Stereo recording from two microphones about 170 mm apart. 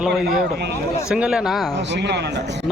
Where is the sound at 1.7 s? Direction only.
90° right.